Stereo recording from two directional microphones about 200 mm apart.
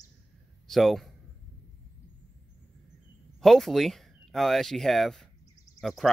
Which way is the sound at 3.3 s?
Centre (ahead or behind).